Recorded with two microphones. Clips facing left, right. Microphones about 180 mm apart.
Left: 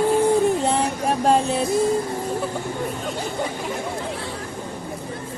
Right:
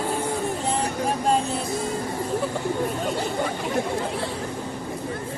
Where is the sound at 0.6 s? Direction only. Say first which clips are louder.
Left 4 dB; 70° left (ahead or behind).